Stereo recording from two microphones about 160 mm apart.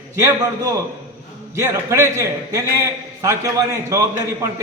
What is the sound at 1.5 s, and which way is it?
A man's voice, 20° right (ahead or behind).